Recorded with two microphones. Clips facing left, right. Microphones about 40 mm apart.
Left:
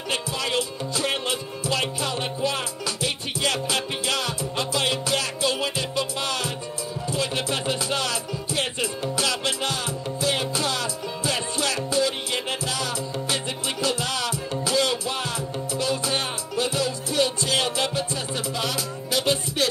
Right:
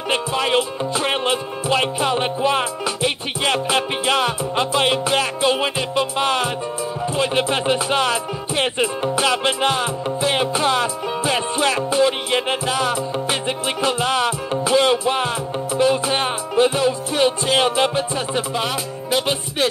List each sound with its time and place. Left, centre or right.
0.1 s music: right